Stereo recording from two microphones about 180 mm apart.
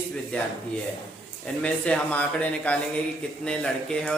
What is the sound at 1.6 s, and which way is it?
Speech, 5° left (ahead or behind).